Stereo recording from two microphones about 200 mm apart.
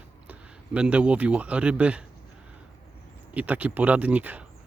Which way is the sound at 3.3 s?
5° right (ahead or behind).